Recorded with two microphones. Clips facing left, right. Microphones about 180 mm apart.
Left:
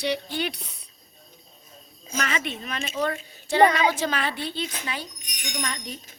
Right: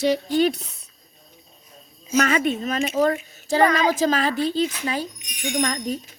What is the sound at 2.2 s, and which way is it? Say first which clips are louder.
A woman's voice: right 9 dB; 45° right (ahead or behind).